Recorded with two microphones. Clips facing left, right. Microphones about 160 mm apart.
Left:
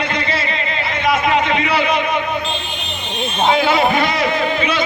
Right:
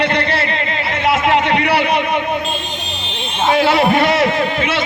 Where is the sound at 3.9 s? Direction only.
65° right (ahead or behind).